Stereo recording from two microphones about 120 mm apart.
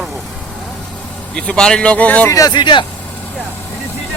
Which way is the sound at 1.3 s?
10° left (ahead or behind).